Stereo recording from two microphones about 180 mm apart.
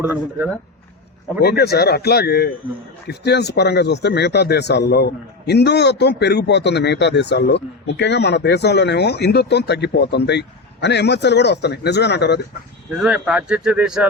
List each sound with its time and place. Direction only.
0.0 s speech: 10° right (ahead or behind)
1.4 s speech: 65° left (ahead or behind)
13.0 s speech: 5° right (ahead or behind)